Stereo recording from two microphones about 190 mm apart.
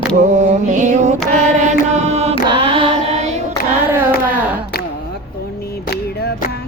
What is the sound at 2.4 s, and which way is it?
Carnatic music, 25° right (ahead or behind).